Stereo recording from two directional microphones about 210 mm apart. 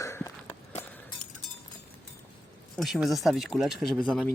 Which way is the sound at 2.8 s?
Centre (ahead or behind).